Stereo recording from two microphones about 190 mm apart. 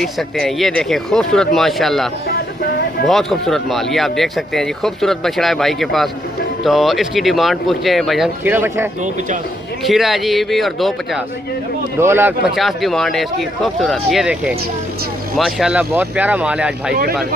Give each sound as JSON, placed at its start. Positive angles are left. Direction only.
{"t": 0.0, "sound": "speech", "side_deg": 0}
{"t": 2.2, "sound": "music", "side_deg": 55}
{"t": 3.1, "sound": "speech", "side_deg": 0}
{"t": 8.5, "sound": "speech", "side_deg": -10}
{"t": 9.8, "sound": "speech", "side_deg": 0}
{"t": 12.0, "sound": "speech", "side_deg": -10}